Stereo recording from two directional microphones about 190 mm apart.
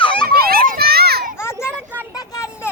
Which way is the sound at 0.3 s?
55° right (ahead or behind).